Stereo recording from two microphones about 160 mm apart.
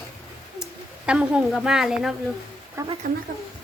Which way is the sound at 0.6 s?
5° right (ahead or behind).